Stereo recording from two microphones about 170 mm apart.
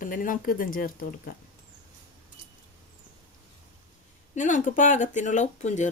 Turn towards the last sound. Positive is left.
turn(degrees=45)  # may be behind; listen again after turning